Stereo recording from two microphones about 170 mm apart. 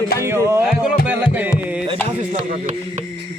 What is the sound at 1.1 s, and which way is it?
Music, 10° right (ahead or behind).